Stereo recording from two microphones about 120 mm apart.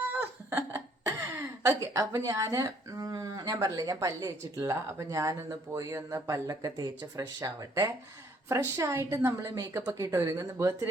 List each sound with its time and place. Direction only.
0.1 s a woman's voice: 20° right (ahead or behind)